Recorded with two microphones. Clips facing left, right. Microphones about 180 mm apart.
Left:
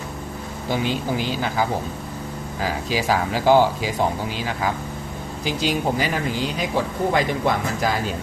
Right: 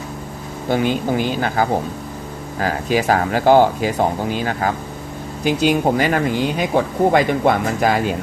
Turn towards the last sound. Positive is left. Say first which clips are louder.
# right 5 dB
turn(degrees=-60)  # may be behind; listen again after turning